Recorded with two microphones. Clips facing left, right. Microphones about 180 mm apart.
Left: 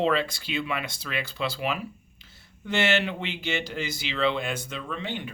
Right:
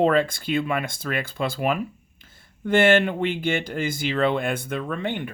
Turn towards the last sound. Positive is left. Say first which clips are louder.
# right 6 dB
turn(degrees=-55)  # may be behind; listen again after turning